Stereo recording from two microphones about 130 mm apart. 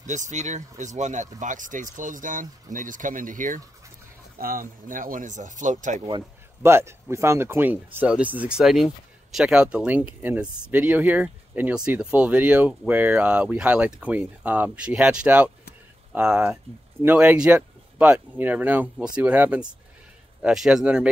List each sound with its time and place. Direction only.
0.0 s speech: 70° right (ahead or behind)
6.6 s speech: 20° right (ahead or behind)